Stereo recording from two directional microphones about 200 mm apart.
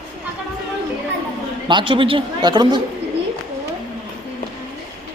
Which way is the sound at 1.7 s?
25° right (ahead or behind).